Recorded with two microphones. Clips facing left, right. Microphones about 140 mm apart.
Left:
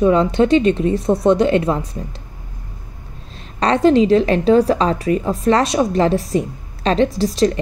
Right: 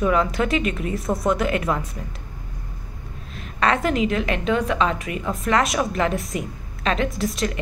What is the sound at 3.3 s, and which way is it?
A woman's voice, 30° left (ahead or behind).